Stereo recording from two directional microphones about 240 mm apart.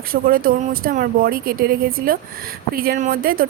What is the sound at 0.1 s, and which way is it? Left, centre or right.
Speech, right.